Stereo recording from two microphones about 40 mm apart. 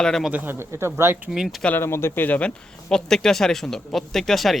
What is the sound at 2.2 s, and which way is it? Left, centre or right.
Speech, left.